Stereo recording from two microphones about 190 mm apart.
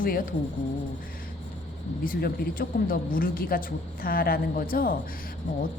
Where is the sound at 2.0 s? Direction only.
50° left (ahead or behind).